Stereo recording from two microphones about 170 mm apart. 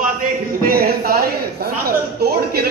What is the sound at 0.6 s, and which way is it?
A man's voice, 60° right (ahead or behind).